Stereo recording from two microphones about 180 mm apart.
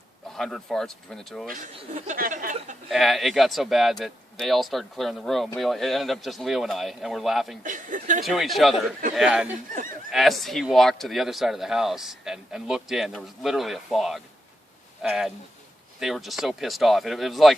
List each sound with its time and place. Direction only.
0.3 s speech: centre (ahead or behind)
1.5 s speech: 45° right (ahead or behind)
2.9 s speech: centre (ahead or behind)
7.6 s speech: 45° right (ahead or behind)
8.2 s speech: centre (ahead or behind)